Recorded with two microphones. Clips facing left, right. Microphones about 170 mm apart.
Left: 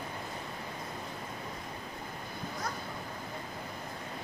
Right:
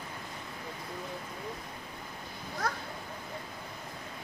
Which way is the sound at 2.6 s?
70° right (ahead or behind).